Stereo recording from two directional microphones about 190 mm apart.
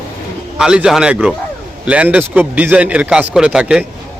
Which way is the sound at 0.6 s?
5° right (ahead or behind).